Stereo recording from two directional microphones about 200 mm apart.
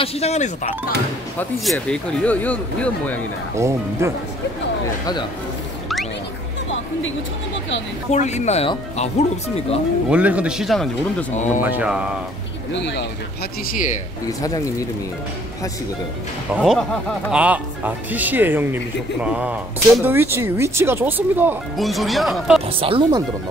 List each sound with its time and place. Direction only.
0.0 s speech: 35° left (ahead or behind)
1.4 s speech: centre (ahead or behind)
3.5 s speech: 15° right (ahead or behind)
8.1 s speech: 35° left (ahead or behind)
10.0 s speech: 5° right (ahead or behind)
11.3 s speech: 35° left (ahead or behind)
11.6 s speech: 5° right (ahead or behind)
12.7 s speech: 60° left (ahead or behind)
14.2 s speech: 15° left (ahead or behind)
16.5 s speech: centre (ahead or behind)
22.8 s speech: 25° right (ahead or behind)